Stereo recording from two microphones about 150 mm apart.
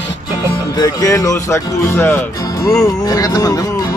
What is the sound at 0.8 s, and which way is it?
Speech, 25° left (ahead or behind).